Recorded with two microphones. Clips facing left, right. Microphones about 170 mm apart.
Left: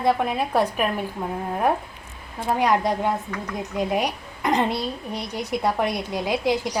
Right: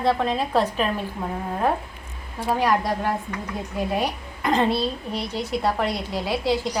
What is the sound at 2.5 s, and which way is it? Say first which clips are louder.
A woman's voice: left 2 dB; 20° left (ahead or behind).